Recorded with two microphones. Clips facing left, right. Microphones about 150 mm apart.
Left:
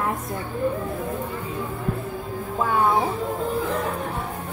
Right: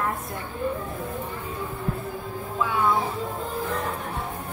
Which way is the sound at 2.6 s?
45° left (ahead or behind).